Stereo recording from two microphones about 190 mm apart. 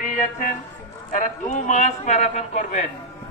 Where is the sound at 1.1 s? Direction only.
40° left (ahead or behind).